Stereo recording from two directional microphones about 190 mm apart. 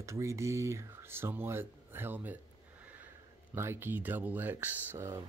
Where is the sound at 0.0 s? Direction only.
15° right (ahead or behind).